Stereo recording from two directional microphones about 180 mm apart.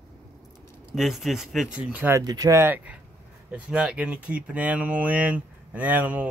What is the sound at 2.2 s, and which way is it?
Speech, 20° right (ahead or behind).